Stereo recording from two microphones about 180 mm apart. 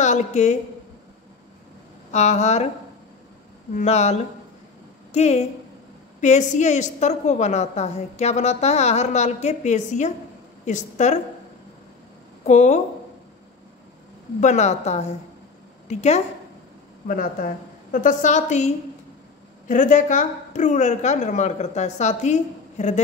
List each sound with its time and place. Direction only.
0.0 s a woman's voice: 40° left (ahead or behind)
2.0 s a woman's voice: 40° left (ahead or behind)
3.7 s a woman's voice: 40° left (ahead or behind)
12.4 s a woman's voice: 40° left (ahead or behind)
14.4 s a woman's voice: 40° left (ahead or behind)
17.1 s a woman's voice: 50° left (ahead or behind)
19.7 s a woman's voice: 45° left (ahead or behind)